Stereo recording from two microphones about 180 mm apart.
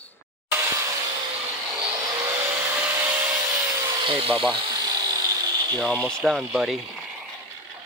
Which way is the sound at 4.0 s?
30° right (ahead or behind).